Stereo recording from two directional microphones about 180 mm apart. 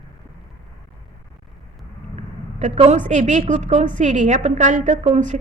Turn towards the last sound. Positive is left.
turn(degrees=-40)  # may be behind; listen again after turning